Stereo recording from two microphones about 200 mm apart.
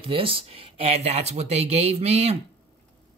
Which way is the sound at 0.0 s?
25° right (ahead or behind).